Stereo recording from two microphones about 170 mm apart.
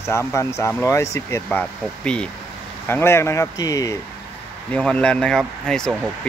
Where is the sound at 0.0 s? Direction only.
15° left (ahead or behind).